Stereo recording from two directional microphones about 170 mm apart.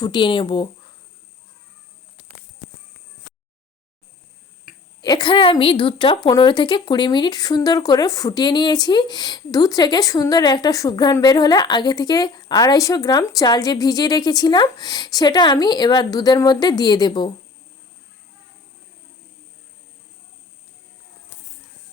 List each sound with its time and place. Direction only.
0.0 s a woman's voice: 25° left (ahead or behind)
5.0 s a woman's voice: 25° left (ahead or behind)